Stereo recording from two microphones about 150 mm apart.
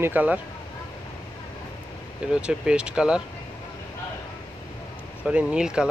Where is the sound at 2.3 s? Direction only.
5° right (ahead or behind).